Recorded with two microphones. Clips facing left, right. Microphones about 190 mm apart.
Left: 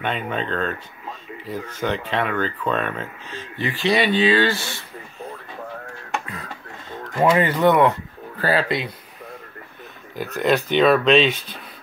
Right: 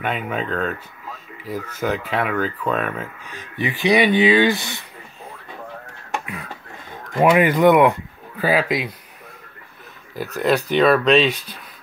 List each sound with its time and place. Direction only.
0.0 s speech: 5° right (ahead or behind)
6.1 s a sound: 10° right (ahead or behind)
6.9 s speech: 15° right (ahead or behind)
10.1 s speech: centre (ahead or behind)